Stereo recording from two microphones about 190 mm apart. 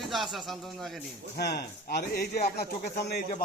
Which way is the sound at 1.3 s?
60° left (ahead or behind).